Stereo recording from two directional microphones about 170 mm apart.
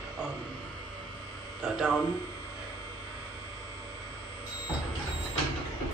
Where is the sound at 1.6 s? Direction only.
5° right (ahead or behind).